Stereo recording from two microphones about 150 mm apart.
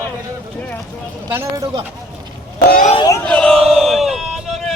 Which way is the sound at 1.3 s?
20° right (ahead or behind).